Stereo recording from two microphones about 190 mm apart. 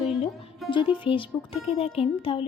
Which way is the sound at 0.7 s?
25° left (ahead or behind).